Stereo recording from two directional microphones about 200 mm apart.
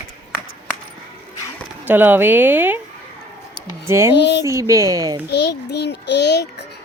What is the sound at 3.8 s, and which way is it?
Speech, 15° right (ahead or behind).